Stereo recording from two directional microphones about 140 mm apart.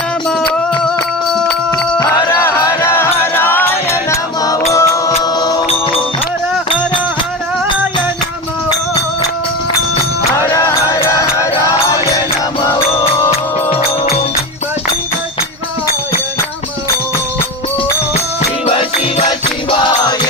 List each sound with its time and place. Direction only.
1.3 s a sound: 5° left (ahead or behind)
2.0 s music: 20° left (ahead or behind)
5.6 s music: 45° left (ahead or behind)
10.5 s music: 20° left (ahead or behind)
13.7 s music: 45° left (ahead or behind)
18.6 s music: 45° left (ahead or behind)